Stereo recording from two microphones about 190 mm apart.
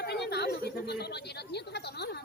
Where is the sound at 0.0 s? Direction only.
60° left (ahead or behind).